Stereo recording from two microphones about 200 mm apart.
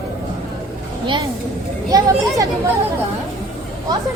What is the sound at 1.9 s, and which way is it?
Speech, 15° right (ahead or behind).